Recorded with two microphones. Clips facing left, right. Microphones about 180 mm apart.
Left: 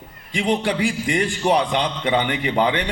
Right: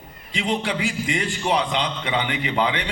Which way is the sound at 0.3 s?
50° left (ahead or behind).